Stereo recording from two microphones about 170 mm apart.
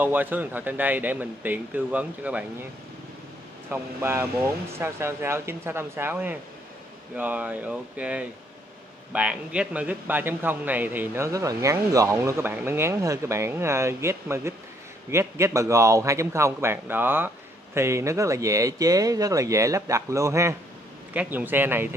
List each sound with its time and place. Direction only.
0.0 s a man's voice: 10° right (ahead or behind)
3.7 s a man's voice: 15° right (ahead or behind)